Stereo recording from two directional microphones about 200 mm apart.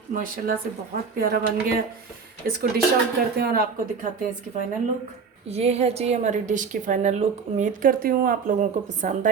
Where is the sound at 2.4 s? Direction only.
45° right (ahead or behind).